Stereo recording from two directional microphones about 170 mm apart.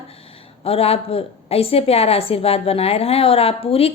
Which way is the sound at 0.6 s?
35° left (ahead or behind).